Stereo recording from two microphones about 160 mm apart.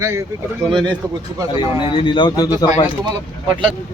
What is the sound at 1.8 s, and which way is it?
Speech, 30° left (ahead or behind).